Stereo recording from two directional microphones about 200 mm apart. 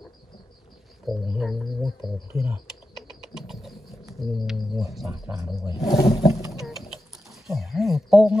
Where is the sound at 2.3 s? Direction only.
10° right (ahead or behind).